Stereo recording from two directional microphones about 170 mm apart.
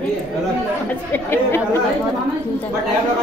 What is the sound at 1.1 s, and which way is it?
Speech, 15° left (ahead or behind).